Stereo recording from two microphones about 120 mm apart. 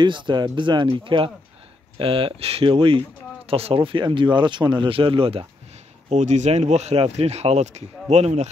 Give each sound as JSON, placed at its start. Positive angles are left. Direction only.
{"t": 0.0, "sound": "speech", "side_deg": -40}
{"t": 6.0, "sound": "speech", "side_deg": -80}